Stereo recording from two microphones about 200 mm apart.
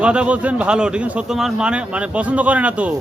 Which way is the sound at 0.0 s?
5° right (ahead or behind).